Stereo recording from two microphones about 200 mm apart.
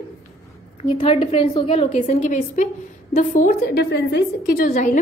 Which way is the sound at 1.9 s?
40° left (ahead or behind).